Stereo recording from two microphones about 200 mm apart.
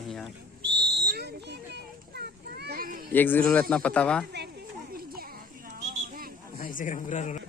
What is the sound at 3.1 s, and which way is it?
A man's voice, 10° left (ahead or behind).